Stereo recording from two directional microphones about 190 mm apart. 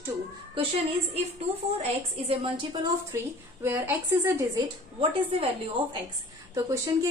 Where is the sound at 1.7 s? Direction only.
30° right (ahead or behind).